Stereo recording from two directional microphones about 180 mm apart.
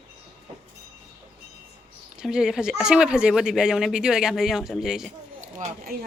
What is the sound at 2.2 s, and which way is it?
A woman's voice, 5° right (ahead or behind).